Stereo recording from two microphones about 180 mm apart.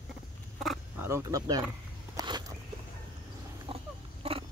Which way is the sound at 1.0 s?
15° right (ahead or behind).